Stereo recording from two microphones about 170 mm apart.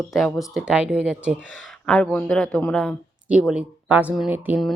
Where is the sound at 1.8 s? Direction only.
5° left (ahead or behind).